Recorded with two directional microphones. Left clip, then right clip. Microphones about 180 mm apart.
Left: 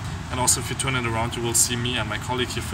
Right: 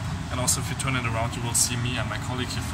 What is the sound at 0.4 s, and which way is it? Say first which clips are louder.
Speech: left 5 dB; 45° left (ahead or behind).